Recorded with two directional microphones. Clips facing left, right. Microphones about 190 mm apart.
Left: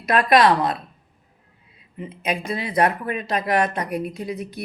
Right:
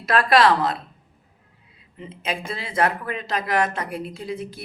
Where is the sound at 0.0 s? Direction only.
15° left (ahead or behind).